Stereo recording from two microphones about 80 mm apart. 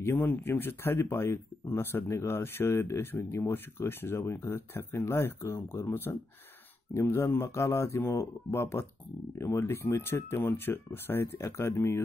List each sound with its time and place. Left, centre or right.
0.0 s speech: left